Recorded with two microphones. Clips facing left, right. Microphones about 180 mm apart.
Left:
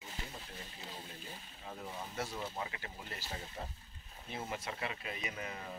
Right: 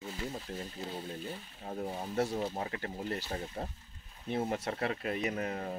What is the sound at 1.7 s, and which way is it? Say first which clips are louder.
Speech: right 8 dB; 40° right (ahead or behind).